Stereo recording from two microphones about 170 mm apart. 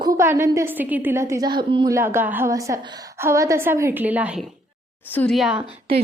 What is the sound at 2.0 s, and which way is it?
A woman's voice, 15° right (ahead or behind).